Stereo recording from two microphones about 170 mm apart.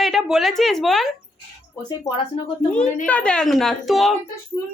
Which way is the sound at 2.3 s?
30° left (ahead or behind).